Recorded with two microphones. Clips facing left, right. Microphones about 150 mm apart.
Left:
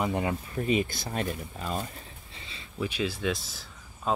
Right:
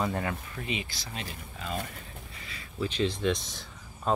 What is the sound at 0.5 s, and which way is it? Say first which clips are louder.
Speech: left 9 dB; 40° left (ahead or behind).